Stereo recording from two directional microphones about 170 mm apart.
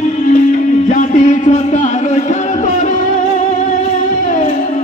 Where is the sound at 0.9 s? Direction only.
45° left (ahead or behind).